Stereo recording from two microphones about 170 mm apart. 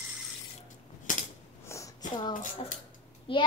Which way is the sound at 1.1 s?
50° left (ahead or behind).